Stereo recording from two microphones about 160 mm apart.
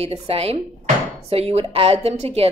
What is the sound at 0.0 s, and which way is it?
Speech, 40° right (ahead or behind).